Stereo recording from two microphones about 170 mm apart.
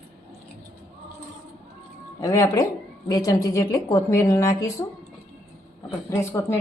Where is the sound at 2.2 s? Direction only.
20° left (ahead or behind).